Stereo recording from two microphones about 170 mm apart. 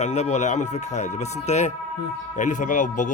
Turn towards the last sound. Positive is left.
turn(degrees=50)  # may be behind; listen again after turning